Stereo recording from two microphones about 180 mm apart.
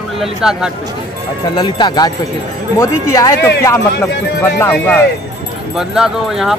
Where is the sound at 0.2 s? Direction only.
5° right (ahead or behind).